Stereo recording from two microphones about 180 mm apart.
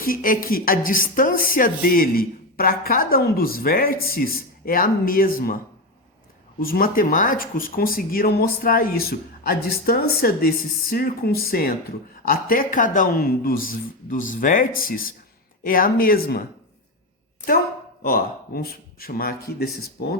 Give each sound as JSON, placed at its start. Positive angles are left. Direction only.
{"t": 0.0, "sound": "speech", "side_deg": 50}
{"t": 6.6, "sound": "speech", "side_deg": 50}
{"t": 18.0, "sound": "speech", "side_deg": 55}